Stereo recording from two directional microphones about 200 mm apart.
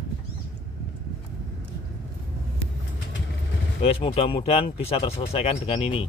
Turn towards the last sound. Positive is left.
turn(degrees=30)  # may be behind; listen again after turning